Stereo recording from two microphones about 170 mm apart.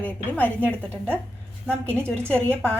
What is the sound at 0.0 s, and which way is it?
A woman's voice, 10° left (ahead or behind).